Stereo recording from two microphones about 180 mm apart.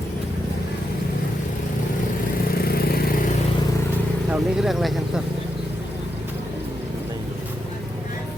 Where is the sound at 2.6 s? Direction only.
60° left (ahead or behind).